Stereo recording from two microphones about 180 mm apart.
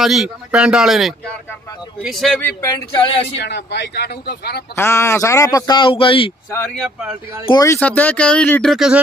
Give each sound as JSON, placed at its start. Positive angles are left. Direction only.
{"t": 0.0, "sound": "speech", "side_deg": 0}
{"t": 2.6, "sound": "speech", "side_deg": 20}
{"t": 3.4, "sound": "speech", "side_deg": 70}
{"t": 4.7, "sound": "speech", "side_deg": 15}
{"t": 6.5, "sound": "speech", "side_deg": 10}
{"t": 7.0, "sound": "speech", "side_deg": -5}
{"t": 7.4, "sound": "speech", "side_deg": 20}